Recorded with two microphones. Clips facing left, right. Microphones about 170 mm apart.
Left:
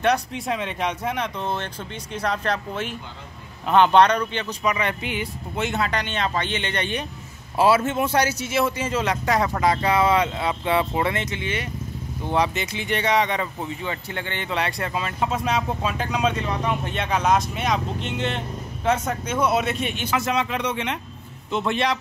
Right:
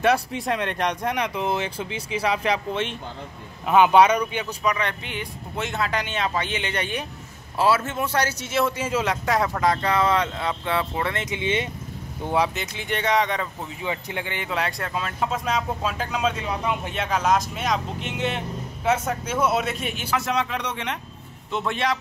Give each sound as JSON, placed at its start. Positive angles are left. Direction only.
{"t": 0.0, "sound": "speech", "side_deg": 0}
{"t": 1.2, "sound": "speech", "side_deg": -5}
{"t": 2.7, "sound": "speech", "side_deg": 5}
{"t": 3.6, "sound": "speech", "side_deg": -5}
{"t": 4.6, "sound": "speech", "side_deg": 5}
{"t": 7.5, "sound": "a man's voice", "side_deg": 15}
{"t": 11.2, "sound": "speech", "side_deg": -20}
{"t": 12.3, "sound": "speech", "side_deg": 0}
{"t": 13.8, "sound": "speech", "side_deg": -10}